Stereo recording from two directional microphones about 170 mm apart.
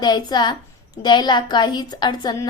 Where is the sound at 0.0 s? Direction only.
25° left (ahead or behind).